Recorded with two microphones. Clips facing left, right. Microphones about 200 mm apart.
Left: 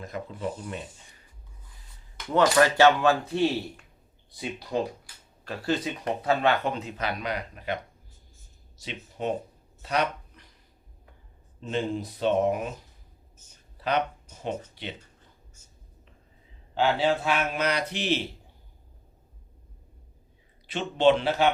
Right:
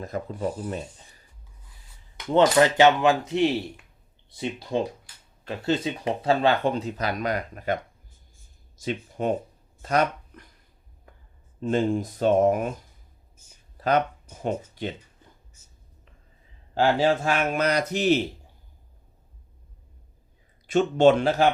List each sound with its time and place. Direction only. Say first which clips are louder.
0.0 s speech: right 4 dB; 40° right (ahead or behind)
2.1 s speech: right 3 dB; 20° right (ahead or behind); by 7.8 s 45° right (ahead or behind)
8.8 s speech: right 5 dB; 50° right (ahead or behind)
11.6 s speech: right 6 dB; 45° right (ahead or behind)
13.3 s a sound: even; 10° right (ahead or behind)
13.7 s speech: right 4 dB; 45° right (ahead or behind)
16.8 s speech: right 3 dB; 45° right (ahead or behind)
20.7 s speech: right 4 dB; 45° right (ahead or behind)